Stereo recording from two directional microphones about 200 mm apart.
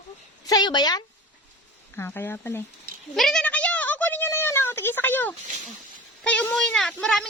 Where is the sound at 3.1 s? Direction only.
Centre (ahead or behind).